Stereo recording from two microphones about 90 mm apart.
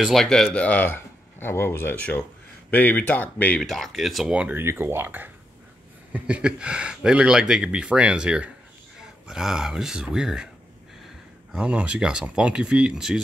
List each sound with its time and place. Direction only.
0.0 s speech: 5° left (ahead or behind)
0.5 s speech: 15° left (ahead or behind)
2.0 s speech: 15° left (ahead or behind)
3.6 s speech: centre (ahead or behind)
4.3 s speech: 15° right (ahead or behind)
11.5 s speech: 15° right (ahead or behind)